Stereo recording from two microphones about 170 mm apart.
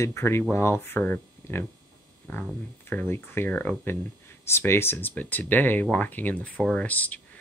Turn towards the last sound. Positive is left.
turn(degrees=10)  # may be behind; listen again after turning